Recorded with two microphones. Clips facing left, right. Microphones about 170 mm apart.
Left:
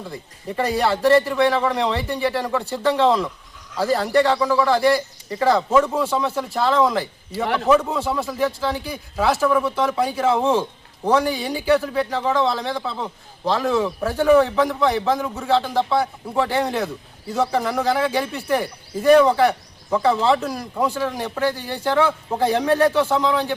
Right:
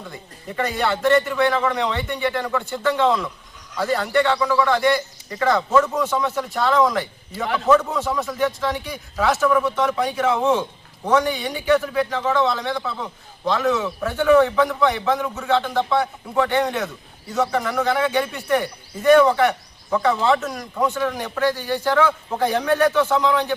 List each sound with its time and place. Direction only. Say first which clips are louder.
0.0 s a man's voice: left 3 dB; 30° left (ahead or behind)